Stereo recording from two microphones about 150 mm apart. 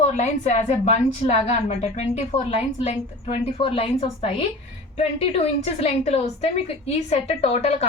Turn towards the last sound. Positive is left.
turn(degrees=45)  # may be behind; listen again after turning